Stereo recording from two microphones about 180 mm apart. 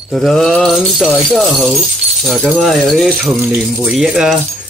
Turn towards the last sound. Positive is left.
turn(degrees=0)  # may be behind; listen again after turning